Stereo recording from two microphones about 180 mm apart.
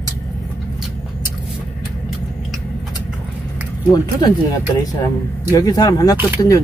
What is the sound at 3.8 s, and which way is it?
Speech, 25° left (ahead or behind).